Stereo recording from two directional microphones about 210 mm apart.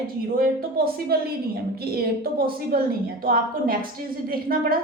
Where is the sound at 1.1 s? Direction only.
45° right (ahead or behind).